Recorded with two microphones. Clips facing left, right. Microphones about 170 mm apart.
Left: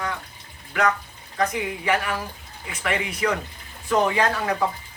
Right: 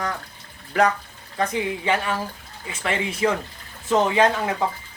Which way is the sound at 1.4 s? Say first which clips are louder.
Right 1 dB; 30° right (ahead or behind).